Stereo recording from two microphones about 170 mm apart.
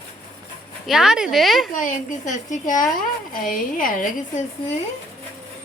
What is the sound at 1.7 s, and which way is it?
Speech, 50° left (ahead or behind).